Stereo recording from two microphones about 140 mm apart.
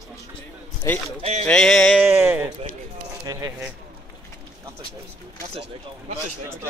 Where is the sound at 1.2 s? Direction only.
55° right (ahead or behind).